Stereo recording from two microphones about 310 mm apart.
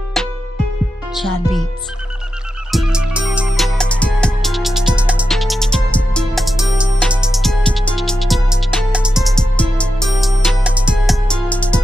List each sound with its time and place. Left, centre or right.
1.1 s speech: centre
2.7 s music: centre